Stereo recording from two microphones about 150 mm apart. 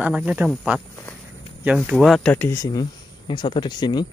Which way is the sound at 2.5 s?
25° left (ahead or behind).